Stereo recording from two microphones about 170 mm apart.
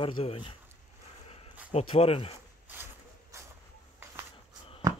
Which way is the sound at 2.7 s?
15° right (ahead or behind).